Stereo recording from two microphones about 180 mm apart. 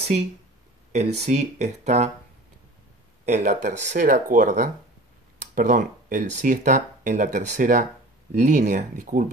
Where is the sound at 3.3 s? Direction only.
40° right (ahead or behind).